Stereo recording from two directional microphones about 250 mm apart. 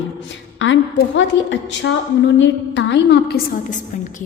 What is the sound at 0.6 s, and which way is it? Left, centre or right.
A woman's voice, left.